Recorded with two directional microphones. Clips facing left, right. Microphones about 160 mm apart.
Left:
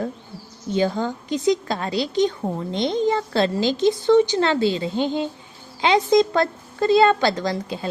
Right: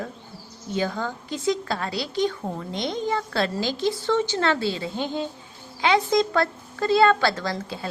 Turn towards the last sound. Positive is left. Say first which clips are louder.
# left 4 dB
turn(degrees=20)  # may be behind; listen again after turning